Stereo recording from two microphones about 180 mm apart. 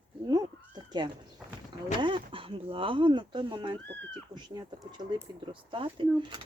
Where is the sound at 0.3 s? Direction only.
25° right (ahead or behind).